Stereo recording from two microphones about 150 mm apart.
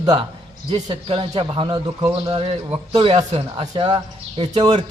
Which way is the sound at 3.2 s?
25° right (ahead or behind).